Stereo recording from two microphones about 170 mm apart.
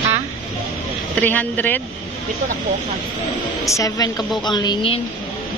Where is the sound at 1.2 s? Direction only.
10° left (ahead or behind).